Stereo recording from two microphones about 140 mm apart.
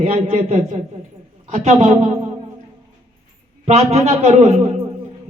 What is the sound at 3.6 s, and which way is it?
Speech, 55° right (ahead or behind).